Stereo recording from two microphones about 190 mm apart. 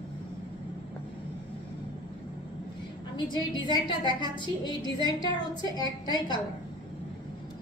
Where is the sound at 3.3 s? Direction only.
25° left (ahead or behind).